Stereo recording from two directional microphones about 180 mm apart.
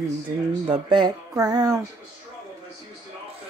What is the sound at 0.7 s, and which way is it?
Speech, 25° right (ahead or behind).